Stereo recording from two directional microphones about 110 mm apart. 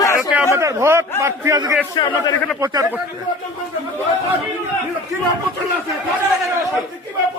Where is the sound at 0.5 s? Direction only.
25° right (ahead or behind).